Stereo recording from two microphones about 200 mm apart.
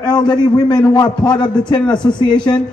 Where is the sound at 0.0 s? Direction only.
20° left (ahead or behind).